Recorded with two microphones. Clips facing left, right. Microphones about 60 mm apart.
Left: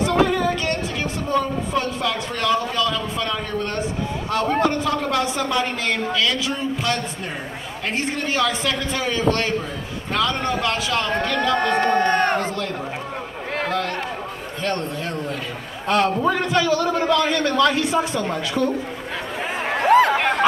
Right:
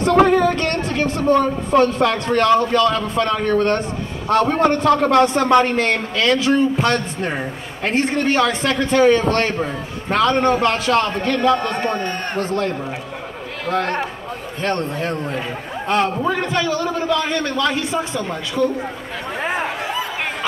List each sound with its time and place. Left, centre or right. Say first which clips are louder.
0.0 s speech: right 5 dB; right
11.5 s a man's voice: left 2 dB; left
12.4 s a man's voice: right 4 dB; right
16.4 s a man's voice: left 1 dB; right
17.9 s speech: left 1 dB; left
19.8 s chatter: left 9 dB; left